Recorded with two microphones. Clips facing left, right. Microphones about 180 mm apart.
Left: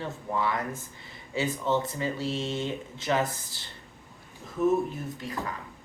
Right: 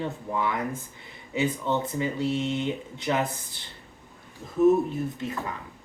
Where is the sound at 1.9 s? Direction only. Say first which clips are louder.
Right 4 dB; 20° right (ahead or behind).